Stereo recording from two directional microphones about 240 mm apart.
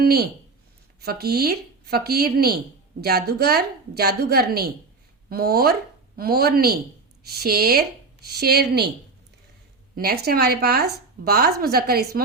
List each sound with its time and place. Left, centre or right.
0.0 s speech: right
9.9 s speech: right